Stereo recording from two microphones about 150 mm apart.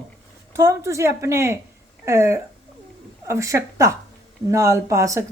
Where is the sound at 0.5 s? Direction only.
20° right (ahead or behind).